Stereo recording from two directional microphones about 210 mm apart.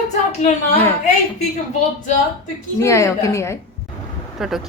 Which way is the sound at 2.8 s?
15° left (ahead or behind).